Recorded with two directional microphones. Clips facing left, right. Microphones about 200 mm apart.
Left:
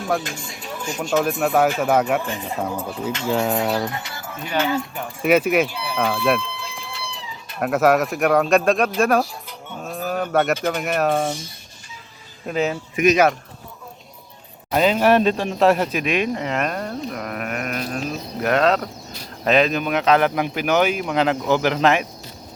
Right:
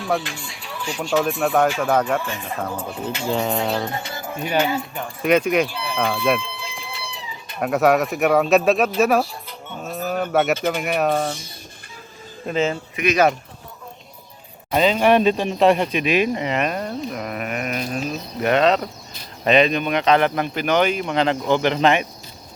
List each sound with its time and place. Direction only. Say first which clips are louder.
0.2 s speech: left 1 dB; 45° left (ahead or behind)
1.2 s speech: left 1 dB; 5° left (ahead or behind)
2.7 s speech: left 1 dB; centre (ahead or behind)
3.8 s speech: right 2 dB; 25° right (ahead or behind)
4.9 s speech: even; 5° left (ahead or behind)
5.6 s a sound: even; 10° left (ahead or behind)
7.6 s speech: even; centre (ahead or behind)
12.5 s speech: right 1 dB; 5° left (ahead or behind)
14.7 s speech: even; 5° left (ahead or behind)